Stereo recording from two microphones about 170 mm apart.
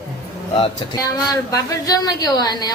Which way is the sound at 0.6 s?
25° left (ahead or behind).